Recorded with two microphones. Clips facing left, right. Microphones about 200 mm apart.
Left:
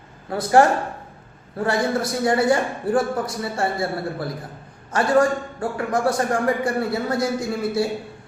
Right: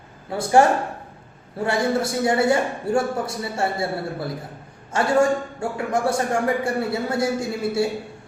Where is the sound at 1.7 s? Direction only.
25° right (ahead or behind).